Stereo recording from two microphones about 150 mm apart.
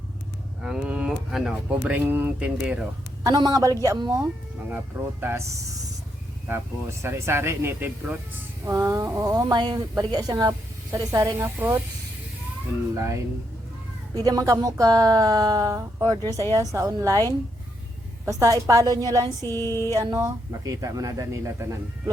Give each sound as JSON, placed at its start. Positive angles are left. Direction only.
{"t": 0.6, "sound": "speech", "side_deg": -5}
{"t": 3.2, "sound": "speech", "side_deg": -25}
{"t": 5.2, "sound": "speech", "side_deg": -15}
{"t": 7.0, "sound": "speech", "side_deg": -15}
{"t": 12.9, "sound": "speech", "side_deg": -20}
{"t": 19.5, "sound": "a sound", "side_deg": 15}
{"t": 19.9, "sound": "speech", "side_deg": -25}